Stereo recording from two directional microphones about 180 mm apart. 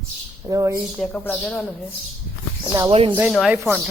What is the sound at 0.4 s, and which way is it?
Speech, 20° right (ahead or behind).